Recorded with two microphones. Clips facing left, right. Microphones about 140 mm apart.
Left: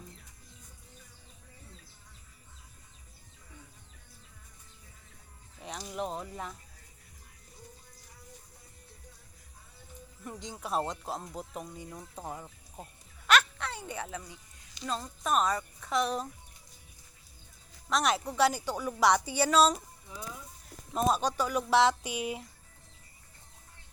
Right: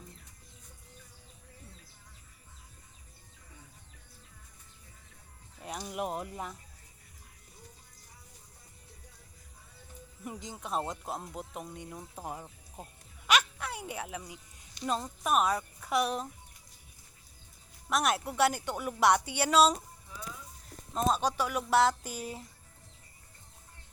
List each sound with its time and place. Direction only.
5.5 s music: 5° right (ahead or behind)
5.9 s a woman's voice: 10° right (ahead or behind)
10.2 s speech: 5° right (ahead or behind)
13.2 s a sound: 10° right (ahead or behind)
14.8 s a woman's voice: 15° right (ahead or behind)
17.8 s a woman's voice: 5° right (ahead or behind)
20.1 s speech: 20° left (ahead or behind)
20.9 s speech: 5° left (ahead or behind)